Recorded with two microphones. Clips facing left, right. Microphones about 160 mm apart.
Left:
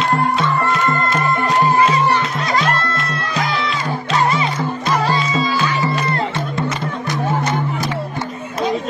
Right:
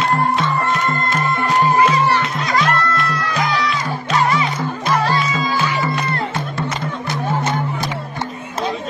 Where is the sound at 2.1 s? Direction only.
30° left (ahead or behind).